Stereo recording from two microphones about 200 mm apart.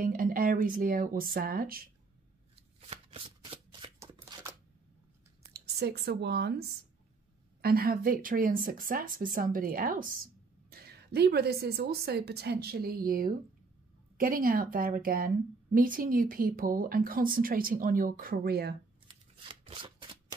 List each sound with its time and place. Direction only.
0.0 s a woman's voice: 45° right (ahead or behind)
2.8 s shuffling cards: 30° right (ahead or behind)
4.0 s scissors: 20° right (ahead or behind)
5.5 s a woman's voice: 55° right (ahead or behind)
19.0 s shuffling cards: 25° right (ahead or behind)